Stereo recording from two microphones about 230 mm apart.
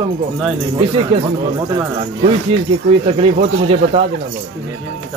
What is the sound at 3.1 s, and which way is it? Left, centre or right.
Speech, right.